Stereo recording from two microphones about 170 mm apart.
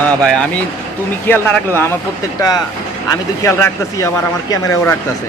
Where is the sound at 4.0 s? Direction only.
20° left (ahead or behind).